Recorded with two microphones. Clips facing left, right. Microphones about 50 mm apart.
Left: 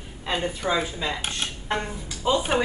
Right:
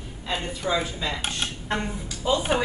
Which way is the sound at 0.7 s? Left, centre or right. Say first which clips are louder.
Right 1 dB; centre.